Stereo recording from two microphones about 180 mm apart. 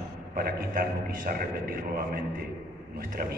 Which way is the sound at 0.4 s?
55° right (ahead or behind).